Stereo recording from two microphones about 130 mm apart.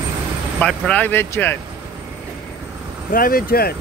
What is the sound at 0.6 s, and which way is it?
Speech, 10° left (ahead or behind).